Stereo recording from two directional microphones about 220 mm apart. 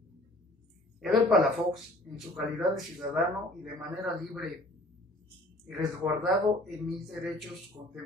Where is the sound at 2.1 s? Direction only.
Centre (ahead or behind).